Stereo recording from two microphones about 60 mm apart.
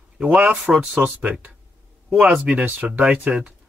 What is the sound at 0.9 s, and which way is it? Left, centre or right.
Speech, right.